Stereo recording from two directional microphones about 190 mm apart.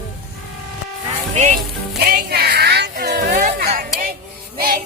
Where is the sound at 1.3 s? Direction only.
35° right (ahead or behind).